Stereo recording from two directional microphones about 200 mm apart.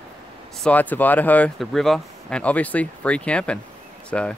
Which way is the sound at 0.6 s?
5° left (ahead or behind).